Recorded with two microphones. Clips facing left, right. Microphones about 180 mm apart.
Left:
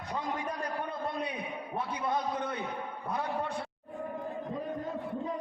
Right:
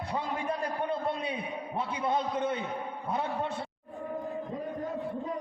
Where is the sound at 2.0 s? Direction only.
25° right (ahead or behind).